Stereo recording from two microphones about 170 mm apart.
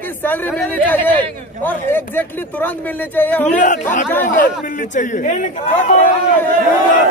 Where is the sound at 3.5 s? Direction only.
45° left (ahead or behind).